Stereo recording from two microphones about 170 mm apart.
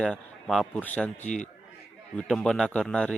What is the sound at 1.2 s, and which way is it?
Speech, 45° left (ahead or behind).